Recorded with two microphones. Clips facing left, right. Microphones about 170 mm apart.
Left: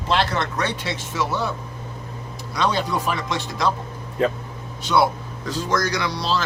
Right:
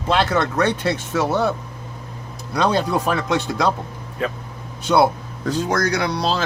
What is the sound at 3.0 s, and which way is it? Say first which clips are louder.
Speech: right 5 dB; 60° right (ahead or behind).